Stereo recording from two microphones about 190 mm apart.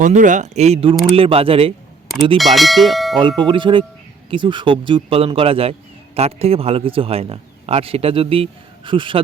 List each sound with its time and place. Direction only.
0.0 s a man's voice: 40° right (ahead or behind)
2.4 s speech: centre (ahead or behind)
3.2 s a man's voice: 25° right (ahead or behind)